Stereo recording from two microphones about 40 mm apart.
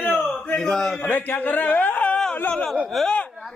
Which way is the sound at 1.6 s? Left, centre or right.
Left.